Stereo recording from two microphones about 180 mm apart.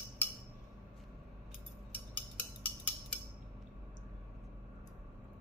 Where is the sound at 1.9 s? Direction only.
10° left (ahead or behind).